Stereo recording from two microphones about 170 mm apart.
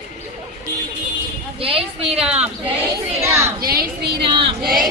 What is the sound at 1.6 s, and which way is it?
Speech, 35° right (ahead or behind).